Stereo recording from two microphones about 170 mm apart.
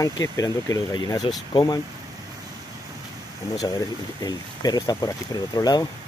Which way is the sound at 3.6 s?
20° left (ahead or behind).